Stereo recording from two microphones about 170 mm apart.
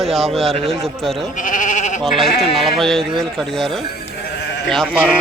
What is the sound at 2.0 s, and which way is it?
Speech, centre (ahead or behind).